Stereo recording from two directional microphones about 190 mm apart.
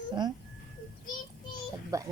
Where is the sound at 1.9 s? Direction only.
15° right (ahead or behind).